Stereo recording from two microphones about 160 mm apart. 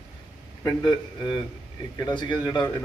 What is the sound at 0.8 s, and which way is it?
Speech, 30° left (ahead or behind).